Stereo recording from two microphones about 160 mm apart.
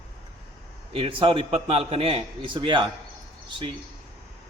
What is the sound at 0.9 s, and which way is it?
A man's voice, 35° right (ahead or behind).